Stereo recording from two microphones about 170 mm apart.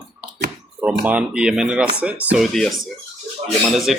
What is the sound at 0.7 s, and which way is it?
Speech, 10° right (ahead or behind).